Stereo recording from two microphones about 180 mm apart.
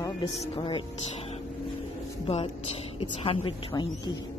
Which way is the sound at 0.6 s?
30° left (ahead or behind).